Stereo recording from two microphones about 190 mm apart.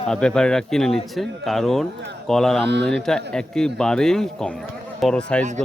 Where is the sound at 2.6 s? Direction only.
65° right (ahead or behind).